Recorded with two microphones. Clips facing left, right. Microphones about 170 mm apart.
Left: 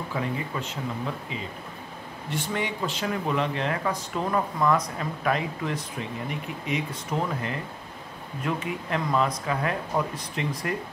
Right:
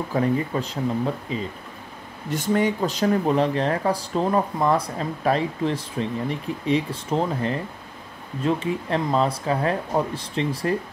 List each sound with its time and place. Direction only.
0.1 s speech: 40° right (ahead or behind)